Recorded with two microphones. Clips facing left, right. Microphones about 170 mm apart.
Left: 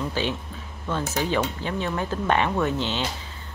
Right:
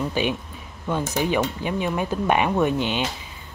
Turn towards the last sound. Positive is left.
turn(degrees=-15)  # may be behind; listen again after turning